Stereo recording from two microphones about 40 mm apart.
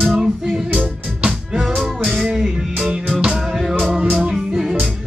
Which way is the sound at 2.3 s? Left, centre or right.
Centre.